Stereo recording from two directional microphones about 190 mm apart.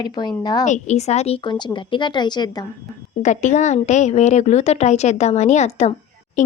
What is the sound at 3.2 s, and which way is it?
Speech, 40° left (ahead or behind).